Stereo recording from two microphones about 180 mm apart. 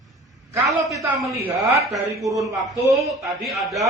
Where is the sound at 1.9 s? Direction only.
20° right (ahead or behind).